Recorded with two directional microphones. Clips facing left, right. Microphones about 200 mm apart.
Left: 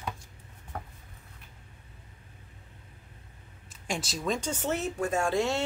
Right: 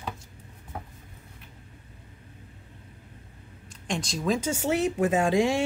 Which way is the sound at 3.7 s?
5° left (ahead or behind).